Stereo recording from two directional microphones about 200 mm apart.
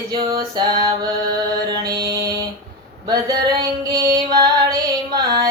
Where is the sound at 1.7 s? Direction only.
20° right (ahead or behind).